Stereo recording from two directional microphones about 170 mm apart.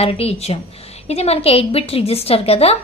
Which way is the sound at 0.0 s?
35° left (ahead or behind).